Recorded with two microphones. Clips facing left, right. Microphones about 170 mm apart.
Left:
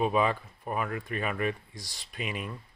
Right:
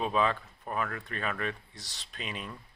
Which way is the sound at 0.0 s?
10° left (ahead or behind).